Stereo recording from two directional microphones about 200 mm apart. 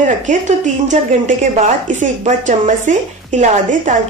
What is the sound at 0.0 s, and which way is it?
Speech, 40° right (ahead or behind).